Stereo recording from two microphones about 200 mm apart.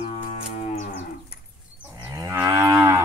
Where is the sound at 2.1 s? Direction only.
15° right (ahead or behind).